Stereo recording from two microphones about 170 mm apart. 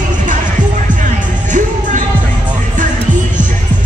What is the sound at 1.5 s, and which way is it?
Music, 50° right (ahead or behind).